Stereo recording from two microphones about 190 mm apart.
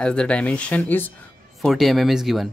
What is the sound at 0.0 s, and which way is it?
Speech, 5° left (ahead or behind).